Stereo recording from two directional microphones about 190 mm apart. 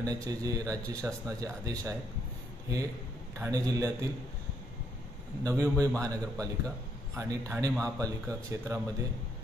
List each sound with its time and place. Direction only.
0.0 s speech: 20° right (ahead or behind)
3.3 s speech: 15° right (ahead or behind)
5.4 s speech: 15° right (ahead or behind)